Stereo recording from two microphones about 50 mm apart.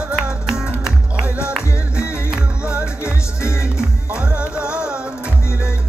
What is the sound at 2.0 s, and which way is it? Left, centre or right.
Music, left.